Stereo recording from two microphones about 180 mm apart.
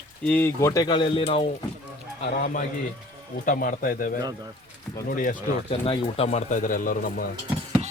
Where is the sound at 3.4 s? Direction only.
50° left (ahead or behind).